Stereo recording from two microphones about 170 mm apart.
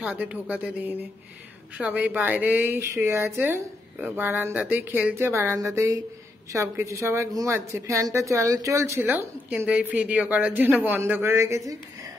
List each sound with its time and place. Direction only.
0.0 s a woman's voice: 10° right (ahead or behind)